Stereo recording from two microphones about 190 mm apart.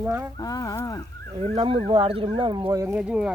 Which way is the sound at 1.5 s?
25° right (ahead or behind).